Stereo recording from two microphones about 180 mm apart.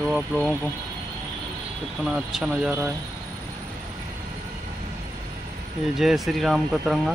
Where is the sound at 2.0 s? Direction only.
Centre (ahead or behind).